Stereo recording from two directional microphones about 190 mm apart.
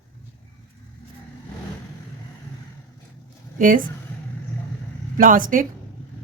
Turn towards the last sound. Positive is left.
turn(degrees=-45)  # may be behind; listen again after turning